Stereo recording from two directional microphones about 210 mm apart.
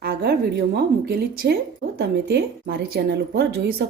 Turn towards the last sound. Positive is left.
turn(degrees=-50)  # may be behind; listen again after turning